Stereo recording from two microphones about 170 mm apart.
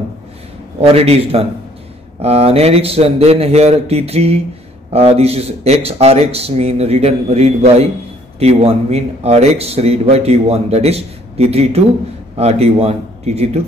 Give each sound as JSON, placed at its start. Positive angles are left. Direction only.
{"t": 0.7, "sound": "a man's voice", "side_deg": -35}